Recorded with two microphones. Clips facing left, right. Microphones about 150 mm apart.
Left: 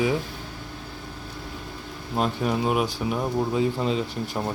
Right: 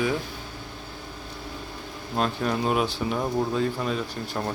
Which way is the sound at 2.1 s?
15° left (ahead or behind).